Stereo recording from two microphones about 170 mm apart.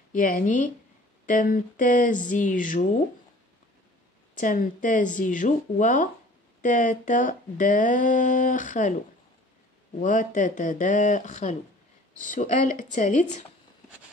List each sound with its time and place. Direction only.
0.1 s speech: 50° left (ahead or behind)
4.4 s speech: 50° left (ahead or behind)
9.9 s speech: 50° left (ahead or behind)